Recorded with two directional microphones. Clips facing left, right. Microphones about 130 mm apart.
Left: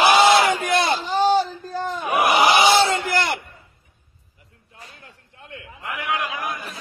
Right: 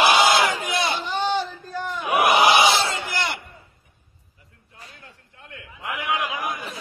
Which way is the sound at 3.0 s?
55° left (ahead or behind).